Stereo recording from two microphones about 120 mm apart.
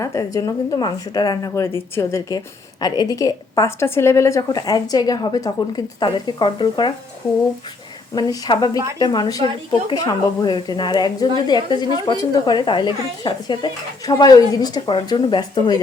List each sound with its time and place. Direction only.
0.0 s a woman's voice: 30° left (ahead or behind)
1.6 s a woman's voice: 20° left (ahead or behind)
2.8 s a woman's voice: 35° left (ahead or behind)
8.1 s a woman's voice: 35° left (ahead or behind)